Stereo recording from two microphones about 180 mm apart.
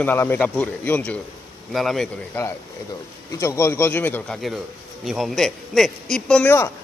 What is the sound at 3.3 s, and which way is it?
A man's voice, 15° left (ahead or behind).